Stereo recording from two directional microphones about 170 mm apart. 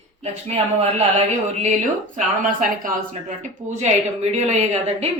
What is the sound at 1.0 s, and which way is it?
A woman's voice, 40° right (ahead or behind).